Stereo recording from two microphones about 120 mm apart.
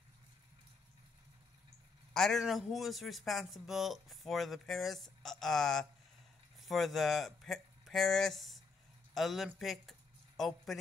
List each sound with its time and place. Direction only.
2.1 s speech: 5° left (ahead or behind)